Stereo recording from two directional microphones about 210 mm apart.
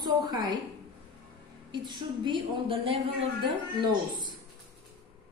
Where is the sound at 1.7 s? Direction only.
20° right (ahead or behind).